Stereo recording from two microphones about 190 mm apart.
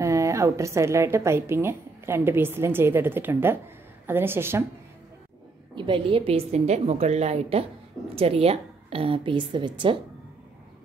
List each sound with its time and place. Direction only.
0.0 s a woman's voice: 15° right (ahead or behind)
5.8 s a woman's voice: 25° right (ahead or behind)